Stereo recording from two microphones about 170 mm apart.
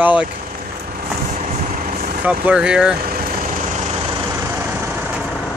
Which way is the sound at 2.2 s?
5° right (ahead or behind).